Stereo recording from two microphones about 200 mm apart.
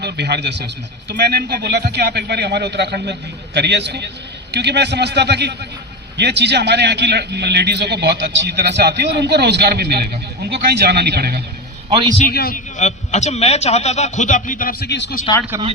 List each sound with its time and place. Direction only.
0.0 s a man's voice: 55° right (ahead or behind)
12.3 s a man's voice: 50° left (ahead or behind)